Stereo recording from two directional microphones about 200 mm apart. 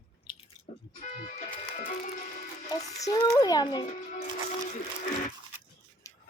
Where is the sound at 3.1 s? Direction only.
20° left (ahead or behind).